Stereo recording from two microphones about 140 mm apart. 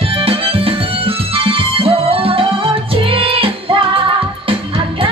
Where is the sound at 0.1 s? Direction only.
40° right (ahead or behind).